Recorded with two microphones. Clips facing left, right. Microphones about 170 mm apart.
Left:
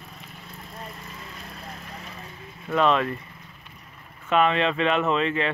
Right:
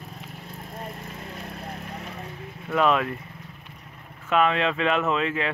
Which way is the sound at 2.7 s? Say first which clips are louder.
Left 1 dB; 5° right (ahead or behind).